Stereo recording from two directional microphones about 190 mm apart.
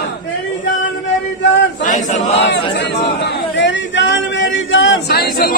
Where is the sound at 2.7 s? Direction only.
65° left (ahead or behind).